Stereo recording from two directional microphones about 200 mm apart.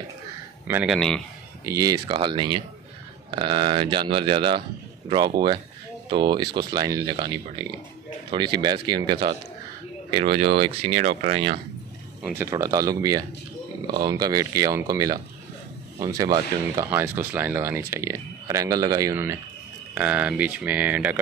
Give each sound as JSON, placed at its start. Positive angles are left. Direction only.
{"t": 0.8, "sound": "a man's voice", "side_deg": 0}
{"t": 1.7, "sound": "speech", "side_deg": -15}
{"t": 10.1, "sound": "speech", "side_deg": -25}
{"t": 12.2, "sound": "speech", "side_deg": -10}